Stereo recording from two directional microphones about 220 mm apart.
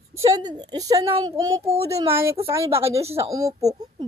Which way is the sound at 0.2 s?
15° right (ahead or behind).